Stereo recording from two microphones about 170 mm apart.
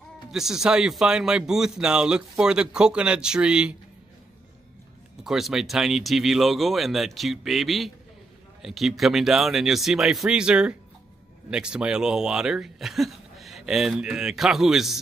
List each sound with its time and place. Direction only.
0.3 s speech: 5° right (ahead or behind)
5.2 s speech: centre (ahead or behind)